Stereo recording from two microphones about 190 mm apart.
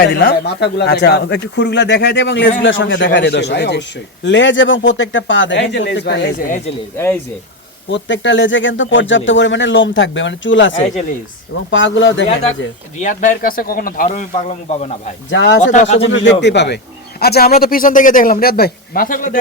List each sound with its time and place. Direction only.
0.0 s speech: 60° left (ahead or behind)
2.6 s a man's voice: 80° left; by 6.3 s 65° left (ahead or behind)
6.9 s speech: 10° left (ahead or behind)
7.9 s a man's voice: 75° left (ahead or behind)
13.0 s speech: 40° left (ahead or behind)
15.3 s a man's voice: 70° left (ahead or behind)
15.6 s speech: 40° left (ahead or behind)
16.1 s a man's voice: 70° left (ahead or behind); by 19.4 s 45° left (ahead or behind)